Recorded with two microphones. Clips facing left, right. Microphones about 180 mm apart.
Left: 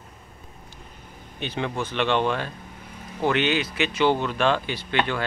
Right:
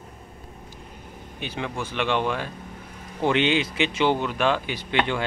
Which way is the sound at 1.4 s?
10° right (ahead or behind).